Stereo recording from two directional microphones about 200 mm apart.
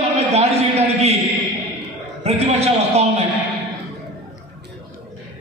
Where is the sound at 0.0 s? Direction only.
30° right (ahead or behind).